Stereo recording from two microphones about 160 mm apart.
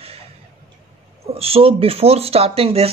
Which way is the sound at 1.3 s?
40° right (ahead or behind).